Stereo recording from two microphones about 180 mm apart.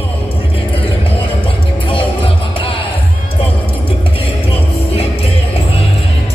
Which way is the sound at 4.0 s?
30° left (ahead or behind).